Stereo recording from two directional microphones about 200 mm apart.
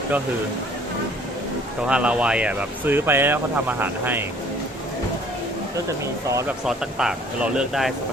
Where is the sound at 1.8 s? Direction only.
5° right (ahead or behind).